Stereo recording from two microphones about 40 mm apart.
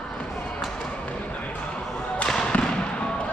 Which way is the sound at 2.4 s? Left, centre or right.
Left.